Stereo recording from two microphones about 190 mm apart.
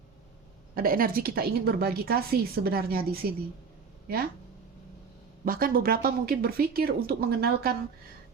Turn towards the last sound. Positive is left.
turn(degrees=-55)  # may be behind; listen again after turning